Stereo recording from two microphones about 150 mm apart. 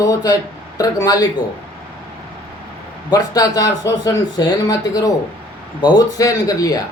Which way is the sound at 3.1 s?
25° left (ahead or behind).